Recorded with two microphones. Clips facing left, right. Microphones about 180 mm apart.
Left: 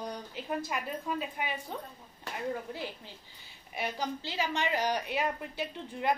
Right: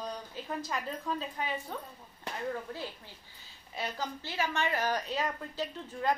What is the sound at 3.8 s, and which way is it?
A woman's voice, 15° left (ahead or behind).